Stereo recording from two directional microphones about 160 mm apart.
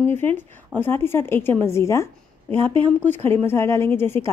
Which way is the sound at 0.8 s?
15° left (ahead or behind).